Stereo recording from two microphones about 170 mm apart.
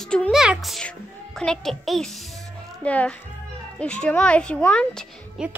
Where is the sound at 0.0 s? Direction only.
5° left (ahead or behind).